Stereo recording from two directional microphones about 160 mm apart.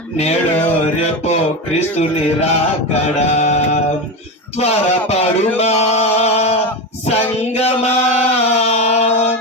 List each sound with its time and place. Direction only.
2.9 s mantra: 45° left (ahead or behind)
4.6 s music: 40° left (ahead or behind)
8.7 s chant: 40° left (ahead or behind)